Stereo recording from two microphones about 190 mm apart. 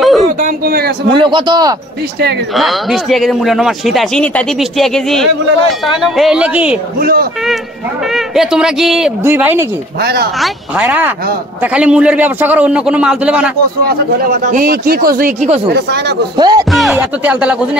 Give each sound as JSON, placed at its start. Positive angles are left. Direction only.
{"t": 0.0, "sound": "a sound", "side_deg": 0}
{"t": 0.4, "sound": "speech", "side_deg": -50}
{"t": 1.1, "sound": "a man's voice", "side_deg": -25}
{"t": 2.5, "sound": "speech", "side_deg": 0}
{"t": 7.0, "sound": "speech", "side_deg": -50}
{"t": 8.1, "sound": "speech", "side_deg": -5}
{"t": 9.9, "sound": "speech", "side_deg": -55}
{"t": 10.4, "sound": "speech", "side_deg": -5}
{"t": 13.8, "sound": "speech", "side_deg": -50}
{"t": 15.4, "sound": "speech", "side_deg": -35}
{"t": 15.7, "sound": "speech", "side_deg": -60}
{"t": 16.3, "sound": "a man's voice", "side_deg": -20}
{"t": 16.7, "sound": "speech", "side_deg": -5}